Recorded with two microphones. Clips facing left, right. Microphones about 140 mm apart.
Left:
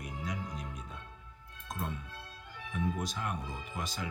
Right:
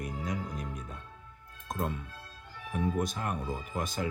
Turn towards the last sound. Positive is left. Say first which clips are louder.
# right 5 dB
turn(degrees=-50)  # may be behind; listen again after turning